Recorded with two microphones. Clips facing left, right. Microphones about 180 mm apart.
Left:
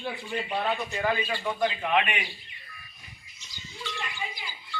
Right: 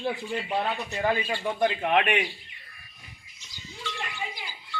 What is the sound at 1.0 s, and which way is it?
Speech, 25° right (ahead or behind).